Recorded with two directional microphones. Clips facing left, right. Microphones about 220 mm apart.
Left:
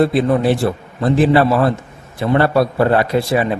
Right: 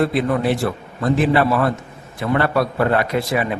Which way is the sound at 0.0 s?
30° left (ahead or behind).